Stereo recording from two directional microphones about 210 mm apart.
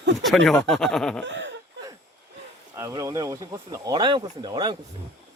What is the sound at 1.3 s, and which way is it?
Speech, 55° right (ahead or behind).